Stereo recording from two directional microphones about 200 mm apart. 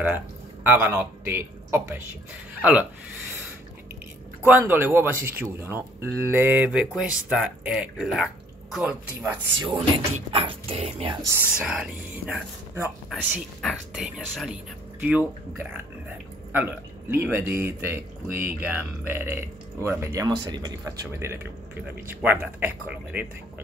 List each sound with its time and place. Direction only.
0.7 s speech: 10° right (ahead or behind)
4.5 s speech: 10° right (ahead or behind)
9.6 s speech: 20° right (ahead or behind)
11.2 s speech: 10° right (ahead or behind)
17.1 s speech: 10° right (ahead or behind)